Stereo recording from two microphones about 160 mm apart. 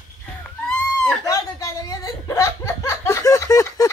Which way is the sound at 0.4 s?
5° left (ahead or behind).